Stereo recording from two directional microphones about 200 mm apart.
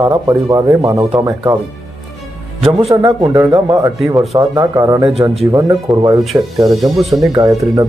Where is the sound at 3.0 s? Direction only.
20° right (ahead or behind).